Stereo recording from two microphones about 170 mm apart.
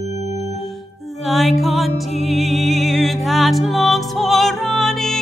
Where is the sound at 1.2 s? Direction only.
Centre (ahead or behind).